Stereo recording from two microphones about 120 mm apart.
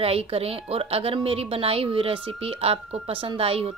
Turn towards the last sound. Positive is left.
turn(degrees=-55)  # may be behind; listen again after turning